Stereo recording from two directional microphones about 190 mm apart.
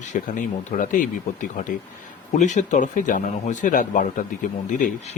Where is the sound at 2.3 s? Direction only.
40° left (ahead or behind).